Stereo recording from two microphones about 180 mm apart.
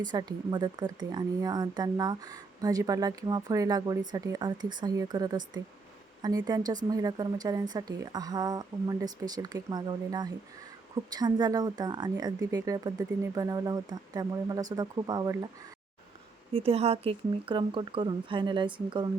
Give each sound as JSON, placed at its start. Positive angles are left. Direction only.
{"t": 0.1, "sound": "a woman's voice", "side_deg": -20}
{"t": 16.6, "sound": "a woman's voice", "side_deg": -35}